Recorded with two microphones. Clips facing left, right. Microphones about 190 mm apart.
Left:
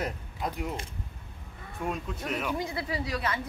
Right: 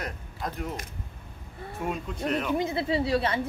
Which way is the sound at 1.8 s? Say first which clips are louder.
Right 2 dB; centre (ahead or behind).